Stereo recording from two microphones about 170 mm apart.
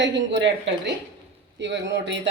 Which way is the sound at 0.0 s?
90° right.